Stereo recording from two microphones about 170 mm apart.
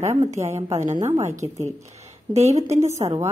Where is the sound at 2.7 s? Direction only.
15° right (ahead or behind).